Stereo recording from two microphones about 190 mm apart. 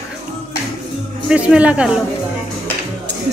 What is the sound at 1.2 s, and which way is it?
Speech, 5° right (ahead or behind).